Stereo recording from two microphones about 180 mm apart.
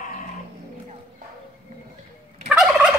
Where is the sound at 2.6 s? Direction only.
5° right (ahead or behind).